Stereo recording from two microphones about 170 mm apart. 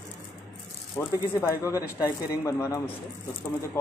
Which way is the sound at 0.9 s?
10° left (ahead or behind).